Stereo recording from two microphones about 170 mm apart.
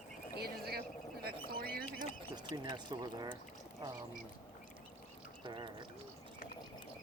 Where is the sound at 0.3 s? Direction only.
65° right (ahead or behind).